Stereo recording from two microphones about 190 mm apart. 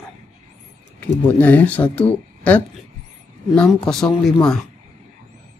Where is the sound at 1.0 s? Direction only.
10° left (ahead or behind).